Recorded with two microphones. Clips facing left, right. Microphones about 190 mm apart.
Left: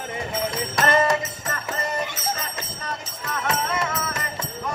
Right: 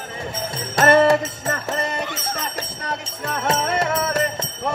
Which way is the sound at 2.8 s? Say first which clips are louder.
Right 4 dB; 50° right (ahead or behind).